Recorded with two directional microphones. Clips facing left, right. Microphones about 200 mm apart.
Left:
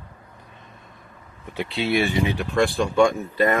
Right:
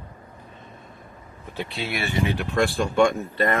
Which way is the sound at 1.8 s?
25° left (ahead or behind).